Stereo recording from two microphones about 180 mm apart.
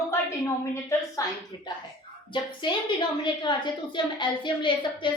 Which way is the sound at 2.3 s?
25° left (ahead or behind).